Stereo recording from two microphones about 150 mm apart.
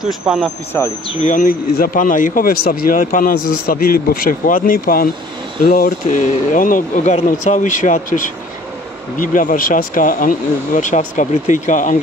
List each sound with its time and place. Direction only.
0.0 s speech: centre (ahead or behind)
1.2 s speech: 65° left (ahead or behind)